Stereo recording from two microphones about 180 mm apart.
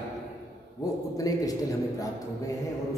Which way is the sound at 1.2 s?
20° left (ahead or behind).